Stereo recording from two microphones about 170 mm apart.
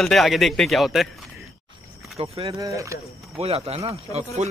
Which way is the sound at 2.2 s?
35° right (ahead or behind).